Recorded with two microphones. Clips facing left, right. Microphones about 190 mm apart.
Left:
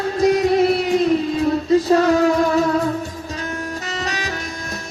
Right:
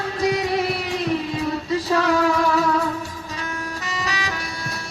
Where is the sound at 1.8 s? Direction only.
45° left (ahead or behind).